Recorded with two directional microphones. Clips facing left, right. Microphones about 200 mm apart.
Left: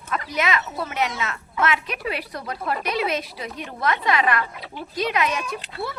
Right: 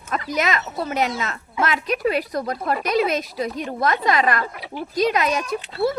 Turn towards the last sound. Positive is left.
turn(degrees=-40)  # may be behind; listen again after turning